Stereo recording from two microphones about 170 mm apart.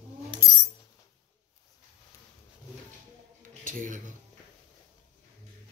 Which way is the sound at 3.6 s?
50° right (ahead or behind).